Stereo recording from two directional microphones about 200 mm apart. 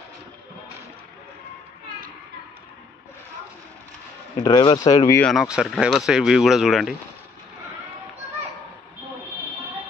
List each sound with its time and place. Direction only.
4.4 s a man's voice: 20° left (ahead or behind)
5.3 s speech: centre (ahead or behind)